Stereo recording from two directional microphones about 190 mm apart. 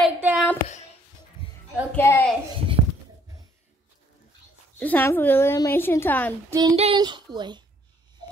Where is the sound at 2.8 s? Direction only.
35° right (ahead or behind).